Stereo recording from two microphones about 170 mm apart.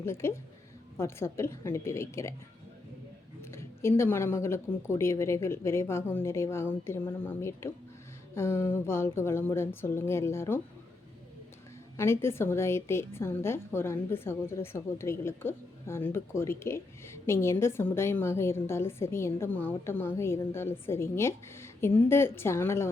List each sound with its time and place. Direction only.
0.0 s a woman's voice: 15° left (ahead or behind)
3.4 s a woman's voice: 15° left (ahead or behind)
11.9 s a woman's voice: 15° left (ahead or behind)